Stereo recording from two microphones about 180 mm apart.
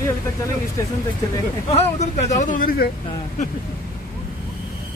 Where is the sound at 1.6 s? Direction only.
35° left (ahead or behind).